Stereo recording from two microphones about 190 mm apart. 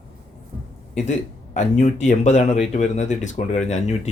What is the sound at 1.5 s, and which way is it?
Speech, 40° left (ahead or behind).